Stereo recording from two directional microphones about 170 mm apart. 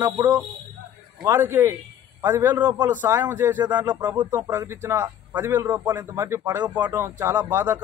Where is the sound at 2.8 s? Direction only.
10° right (ahead or behind).